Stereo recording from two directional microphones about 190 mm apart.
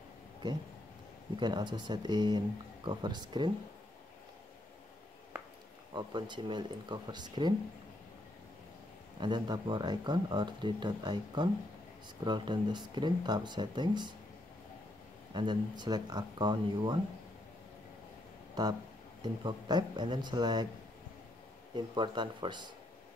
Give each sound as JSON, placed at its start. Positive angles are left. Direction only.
{"t": 0.4, "sound": "speech", "side_deg": -20}
{"t": 5.9, "sound": "speech", "side_deg": -25}
{"t": 9.2, "sound": "speech", "side_deg": -25}
{"t": 15.3, "sound": "speech", "side_deg": -25}
{"t": 18.5, "sound": "speech", "side_deg": -20}
{"t": 21.7, "sound": "speech", "side_deg": -25}